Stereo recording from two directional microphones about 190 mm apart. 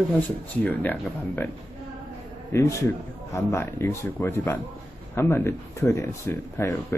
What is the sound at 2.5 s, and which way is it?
Speech, 15° left (ahead or behind).